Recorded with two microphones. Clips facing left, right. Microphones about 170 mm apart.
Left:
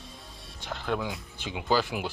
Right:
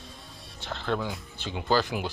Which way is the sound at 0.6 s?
10° left (ahead or behind).